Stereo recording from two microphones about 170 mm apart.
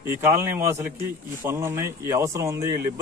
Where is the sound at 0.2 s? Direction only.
15° right (ahead or behind).